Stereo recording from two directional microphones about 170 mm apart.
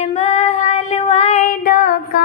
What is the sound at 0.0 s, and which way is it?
Child singing, 40° left (ahead or behind).